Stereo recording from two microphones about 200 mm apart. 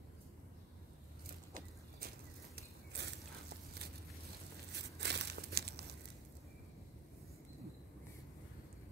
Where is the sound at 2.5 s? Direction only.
55° right (ahead or behind).